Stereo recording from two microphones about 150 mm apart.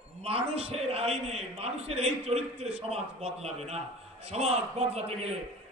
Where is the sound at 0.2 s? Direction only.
40° right (ahead or behind).